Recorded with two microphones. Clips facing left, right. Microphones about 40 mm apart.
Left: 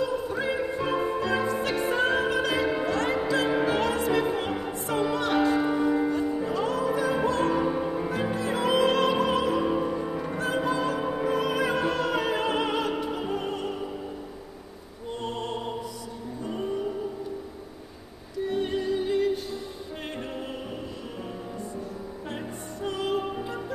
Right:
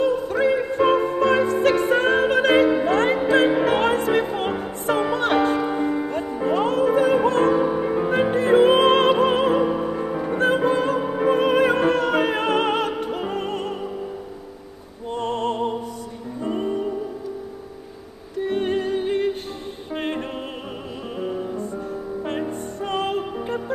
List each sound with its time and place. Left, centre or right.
0.0 s music: right
7.5 s music: centre
7.8 s music: right
9.7 s music: centre
10.3 s music: right
13.0 s opera: right
15.1 s music: right
18.4 s music: right
22.8 s music: right